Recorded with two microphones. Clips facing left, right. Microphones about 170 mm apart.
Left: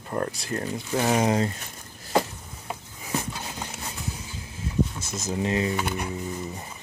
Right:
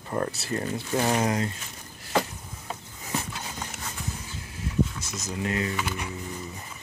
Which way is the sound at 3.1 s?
10° left (ahead or behind).